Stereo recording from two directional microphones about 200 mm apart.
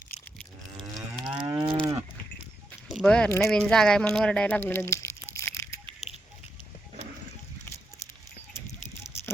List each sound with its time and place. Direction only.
0.8 s moo: 20° right (ahead or behind)
1.6 s cattle: 25° right (ahead or behind)
2.9 s speech: 5° left (ahead or behind)